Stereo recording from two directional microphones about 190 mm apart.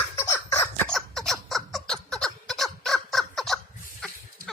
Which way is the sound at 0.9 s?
Centre (ahead or behind).